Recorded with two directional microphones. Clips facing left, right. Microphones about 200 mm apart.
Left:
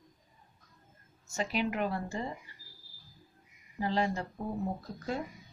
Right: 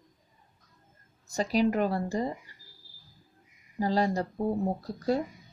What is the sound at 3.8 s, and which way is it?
Speech, 35° right (ahead or behind).